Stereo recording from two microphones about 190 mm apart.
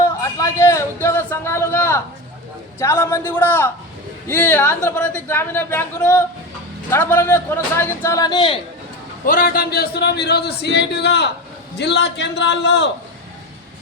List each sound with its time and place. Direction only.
0.2 s a sound: 15° left (ahead or behind)
2.7 s a woman's voice: 15° left (ahead or behind)
9.2 s speech: 50° left (ahead or behind); by 12.9 s 65° left (ahead or behind)